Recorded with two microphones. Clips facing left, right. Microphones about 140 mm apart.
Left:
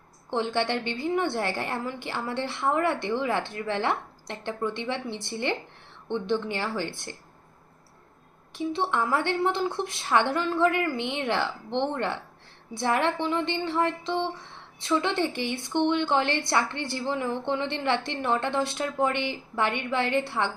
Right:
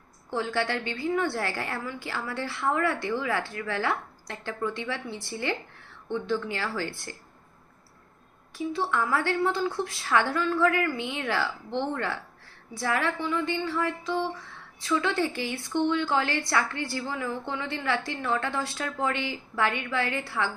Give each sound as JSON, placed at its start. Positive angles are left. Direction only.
{"t": 0.3, "sound": "a woman's voice", "side_deg": 25}
{"t": 8.5, "sound": "a woman's voice", "side_deg": 25}